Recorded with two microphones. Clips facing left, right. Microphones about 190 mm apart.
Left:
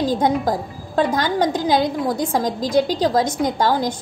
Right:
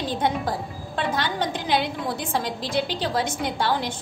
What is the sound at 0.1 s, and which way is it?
A woman's voice, 40° left (ahead or behind).